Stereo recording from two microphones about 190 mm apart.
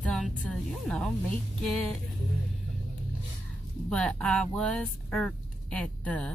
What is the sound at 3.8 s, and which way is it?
Speech, 5° left (ahead or behind).